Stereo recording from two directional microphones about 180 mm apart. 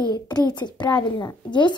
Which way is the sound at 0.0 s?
25° left (ahead or behind).